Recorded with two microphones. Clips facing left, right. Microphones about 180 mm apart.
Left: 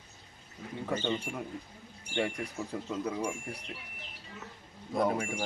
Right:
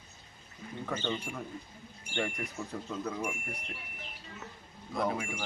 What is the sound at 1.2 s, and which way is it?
Speech, 25° left (ahead or behind).